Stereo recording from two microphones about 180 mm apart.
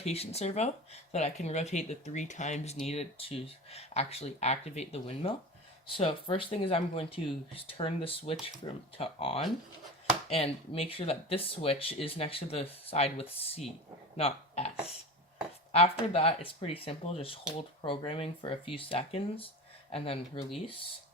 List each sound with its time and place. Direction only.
0.0 s speech: 35° left (ahead or behind)
15.7 s speech: 35° left (ahead or behind)